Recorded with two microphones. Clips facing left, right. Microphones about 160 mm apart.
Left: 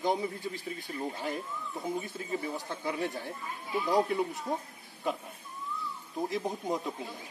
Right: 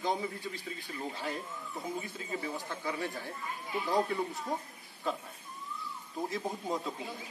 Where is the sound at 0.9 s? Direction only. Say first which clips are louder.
Left 3 dB; 20° left (ahead or behind).